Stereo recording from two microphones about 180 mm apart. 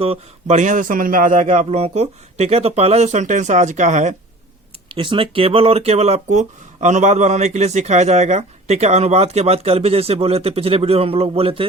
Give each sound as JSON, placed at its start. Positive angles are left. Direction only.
{"t": 0.0, "sound": "speech", "side_deg": -35}
{"t": 4.9, "sound": "speech", "side_deg": -30}